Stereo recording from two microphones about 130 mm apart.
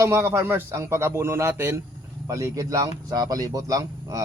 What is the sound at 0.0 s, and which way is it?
Speech, 20° right (ahead or behind).